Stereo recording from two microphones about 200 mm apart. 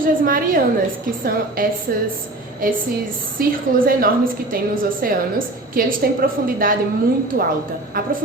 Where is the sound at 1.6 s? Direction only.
45° right (ahead or behind).